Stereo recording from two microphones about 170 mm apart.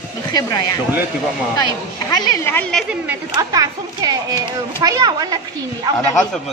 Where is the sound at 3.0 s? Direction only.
20° right (ahead or behind).